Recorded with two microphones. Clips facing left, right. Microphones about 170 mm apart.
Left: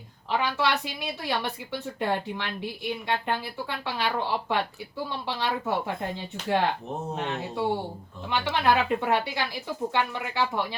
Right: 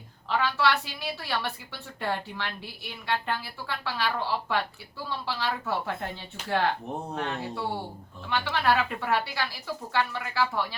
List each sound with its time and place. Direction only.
0.3 s a woman's voice: 20° left (ahead or behind)